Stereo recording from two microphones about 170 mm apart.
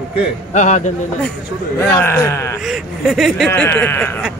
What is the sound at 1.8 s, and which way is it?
Speech, 15° left (ahead or behind).